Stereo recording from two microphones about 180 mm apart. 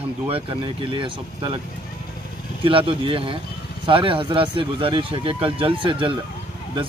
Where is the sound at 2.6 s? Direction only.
30° right (ahead or behind).